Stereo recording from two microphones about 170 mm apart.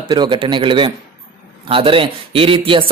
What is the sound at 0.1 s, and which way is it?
A man's voice, 25° right (ahead or behind).